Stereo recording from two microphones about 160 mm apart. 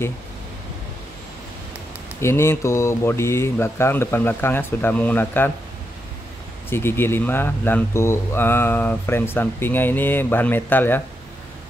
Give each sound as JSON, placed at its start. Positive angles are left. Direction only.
{"t": 2.1, "sound": "speech", "side_deg": 15}
{"t": 6.7, "sound": "speech", "side_deg": 15}